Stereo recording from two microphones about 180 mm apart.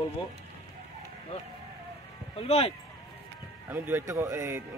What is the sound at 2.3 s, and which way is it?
Speech, 35° left (ahead or behind).